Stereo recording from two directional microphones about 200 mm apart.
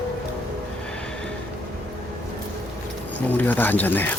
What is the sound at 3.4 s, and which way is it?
Speech, 10° left (ahead or behind).